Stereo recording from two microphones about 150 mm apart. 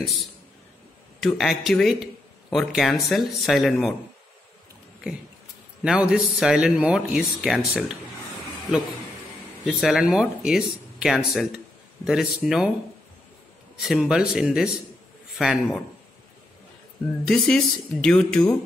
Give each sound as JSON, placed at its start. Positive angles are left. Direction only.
{"t": 1.2, "sound": "speech", "side_deg": 0}
{"t": 5.9, "sound": "a man's voice", "side_deg": -5}
{"t": 9.7, "sound": "speech", "side_deg": 0}
{"t": 13.7, "sound": "speech", "side_deg": -5}
{"t": 17.3, "sound": "speech", "side_deg": 5}